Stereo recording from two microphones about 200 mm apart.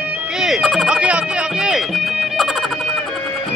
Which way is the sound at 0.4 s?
Centre (ahead or behind).